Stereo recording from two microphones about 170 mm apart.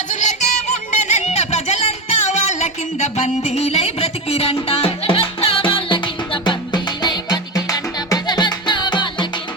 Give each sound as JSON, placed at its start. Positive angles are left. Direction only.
{"t": 0.1, "sound": "music", "side_deg": 45}